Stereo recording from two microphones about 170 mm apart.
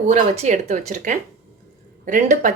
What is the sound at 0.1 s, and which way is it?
Speech, 45° right (ahead or behind).